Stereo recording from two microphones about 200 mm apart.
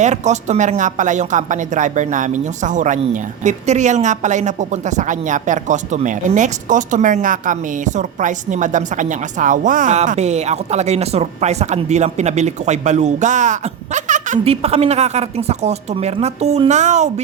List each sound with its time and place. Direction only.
0.0 s speech: 35° right (ahead or behind)